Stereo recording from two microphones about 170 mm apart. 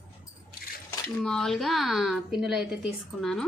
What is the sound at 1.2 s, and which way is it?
A woman's voice, 5° left (ahead or behind).